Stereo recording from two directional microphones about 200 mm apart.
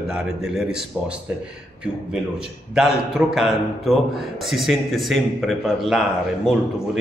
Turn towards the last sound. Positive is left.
turn(degrees=0)  # may be behind; listen again after turning